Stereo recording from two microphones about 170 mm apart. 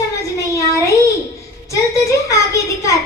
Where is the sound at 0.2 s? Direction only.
20° left (ahead or behind).